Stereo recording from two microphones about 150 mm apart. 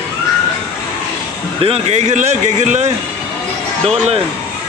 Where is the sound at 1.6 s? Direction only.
45° right (ahead or behind).